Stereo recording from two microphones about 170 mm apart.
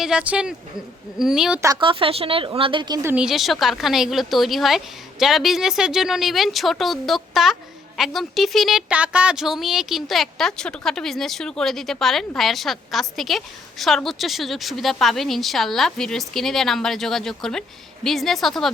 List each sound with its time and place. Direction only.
0.0 s a woman's voice: 5° right (ahead or behind)
1.6 s a woman's voice: 25° right (ahead or behind)
3.2 s a woman's voice: centre (ahead or behind)